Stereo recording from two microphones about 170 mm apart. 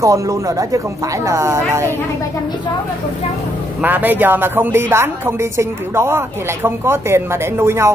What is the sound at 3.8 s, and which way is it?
A woman's voice, 10° right (ahead or behind).